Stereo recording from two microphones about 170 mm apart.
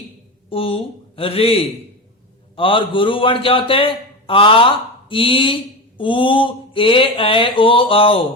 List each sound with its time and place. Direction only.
0.5 s a man's voice: 35° left (ahead or behind)